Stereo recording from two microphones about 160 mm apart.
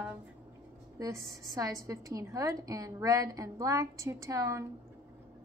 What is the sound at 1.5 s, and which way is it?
A woman's voice, 20° right (ahead or behind).